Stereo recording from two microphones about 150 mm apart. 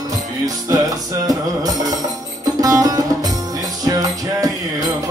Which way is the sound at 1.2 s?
25° right (ahead or behind).